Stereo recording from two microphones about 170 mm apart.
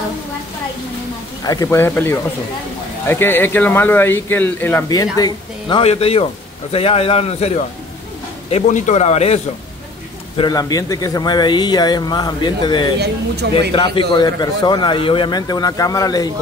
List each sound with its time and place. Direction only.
1.4 s a man's voice: 20° left (ahead or behind); by 9.4 s 40° left (ahead or behind)
10.3 s a man's voice: 25° left (ahead or behind)